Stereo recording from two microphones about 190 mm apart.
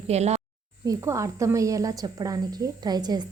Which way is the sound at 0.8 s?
15° right (ahead or behind).